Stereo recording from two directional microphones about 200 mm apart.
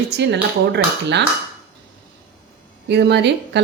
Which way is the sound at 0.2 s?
60° right (ahead or behind).